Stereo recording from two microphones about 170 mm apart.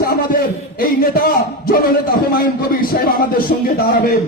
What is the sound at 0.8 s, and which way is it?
A man's voice, 60° left (ahead or behind).